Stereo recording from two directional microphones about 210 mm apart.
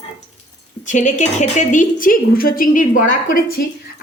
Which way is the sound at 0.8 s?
35° left (ahead or behind).